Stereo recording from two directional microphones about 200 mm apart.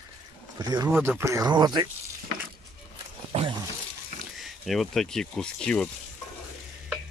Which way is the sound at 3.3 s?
25° right (ahead or behind).